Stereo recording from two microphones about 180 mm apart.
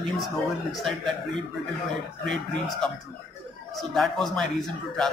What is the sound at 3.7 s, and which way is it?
Speech, centre (ahead or behind).